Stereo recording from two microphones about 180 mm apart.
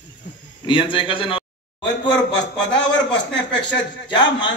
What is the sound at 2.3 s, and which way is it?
A man's voice, 80° left.